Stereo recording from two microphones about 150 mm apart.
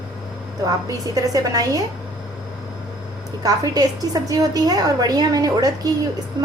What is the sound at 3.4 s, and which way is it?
A woman's voice, 25° right (ahead or behind).